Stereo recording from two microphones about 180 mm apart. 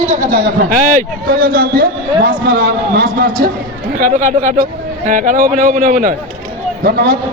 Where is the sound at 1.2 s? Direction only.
55° right (ahead or behind).